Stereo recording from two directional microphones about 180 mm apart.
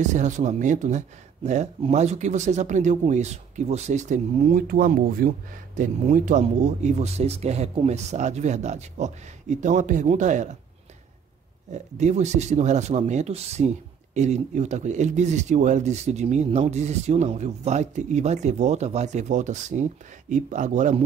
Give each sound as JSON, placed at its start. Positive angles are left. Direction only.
{"t": 0.0, "sound": "speech", "side_deg": -40}
{"t": 11.7, "sound": "speech", "side_deg": -40}